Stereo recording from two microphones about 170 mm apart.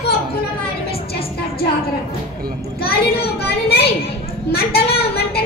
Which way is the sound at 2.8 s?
65° left (ahead or behind).